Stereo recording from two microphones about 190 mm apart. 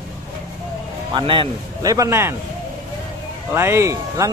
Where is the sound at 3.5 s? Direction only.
15° right (ahead or behind).